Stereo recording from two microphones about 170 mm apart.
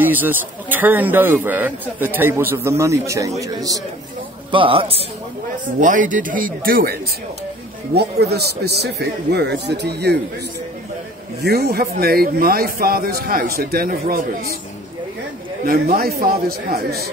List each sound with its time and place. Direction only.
0.0 s a man's voice: 10° right (ahead or behind)
4.5 s a man's voice: 30° right (ahead or behind)
5.8 s speech: 50° right (ahead or behind)
7.9 s a man's voice: 70° right (ahead or behind)
11.4 s a man's voice: 70° right (ahead or behind)
15.6 s a man's voice: 55° right (ahead or behind)